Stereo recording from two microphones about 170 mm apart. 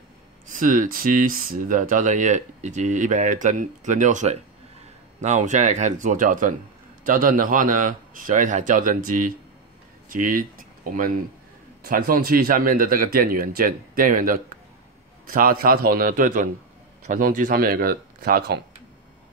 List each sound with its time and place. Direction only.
0.5 s speech: 50° right (ahead or behind)